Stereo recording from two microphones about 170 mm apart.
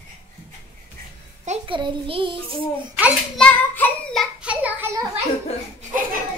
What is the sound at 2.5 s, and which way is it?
Hands, centre (ahead or behind).